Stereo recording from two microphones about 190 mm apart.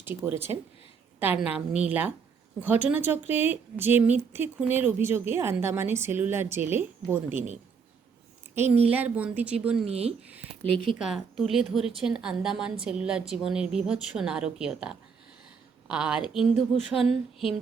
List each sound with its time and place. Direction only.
0.0 s a woman's voice: 10° right (ahead or behind)
8.8 s a woman's voice: 10° right (ahead or behind)
9.9 s speech: 30° right (ahead or behind)
10.2 s a sound: 10° right (ahead or behind)
10.8 s a woman's voice: centre (ahead or behind)